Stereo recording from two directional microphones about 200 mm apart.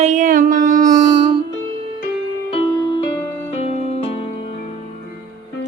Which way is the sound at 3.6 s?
30° left (ahead or behind).